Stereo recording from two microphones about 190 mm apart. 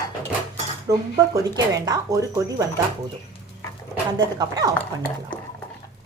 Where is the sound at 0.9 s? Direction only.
20° right (ahead or behind).